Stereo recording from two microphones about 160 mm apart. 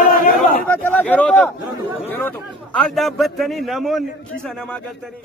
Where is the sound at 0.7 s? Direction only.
10° left (ahead or behind).